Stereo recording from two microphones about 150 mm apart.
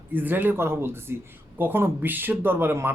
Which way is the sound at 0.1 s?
15° right (ahead or behind).